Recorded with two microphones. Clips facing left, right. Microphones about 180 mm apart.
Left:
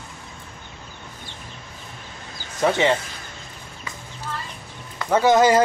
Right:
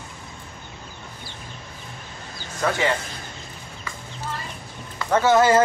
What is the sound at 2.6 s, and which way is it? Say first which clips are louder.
Speech: left 4 dB; 25° left (ahead or behind).